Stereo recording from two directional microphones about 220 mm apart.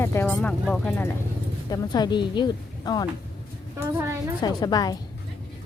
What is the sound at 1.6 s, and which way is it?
Speech, 20° left (ahead or behind).